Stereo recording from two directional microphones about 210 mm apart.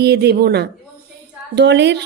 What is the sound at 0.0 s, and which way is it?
A woman's voice, 50° right (ahead or behind).